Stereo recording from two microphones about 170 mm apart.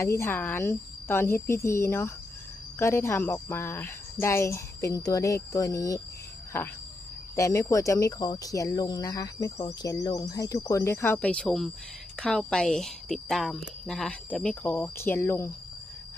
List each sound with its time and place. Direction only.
0.0 s speech: 15° left (ahead or behind)